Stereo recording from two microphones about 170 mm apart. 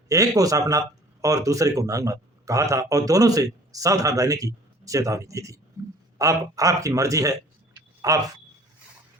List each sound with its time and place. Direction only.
0.1 s speech: 20° right (ahead or behind)